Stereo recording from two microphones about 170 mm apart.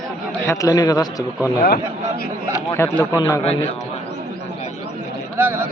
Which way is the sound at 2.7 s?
15° left (ahead or behind).